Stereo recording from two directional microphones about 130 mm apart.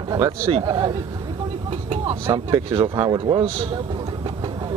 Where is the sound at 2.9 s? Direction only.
30° right (ahead or behind).